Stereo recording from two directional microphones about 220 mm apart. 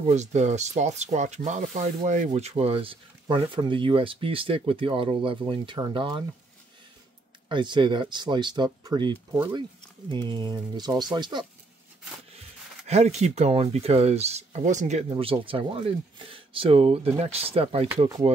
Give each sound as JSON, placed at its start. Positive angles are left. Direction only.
{"t": 0.0, "sound": "speech", "side_deg": -30}
{"t": 7.4, "sound": "speech", "side_deg": -20}
{"t": 12.8, "sound": "speech", "side_deg": -30}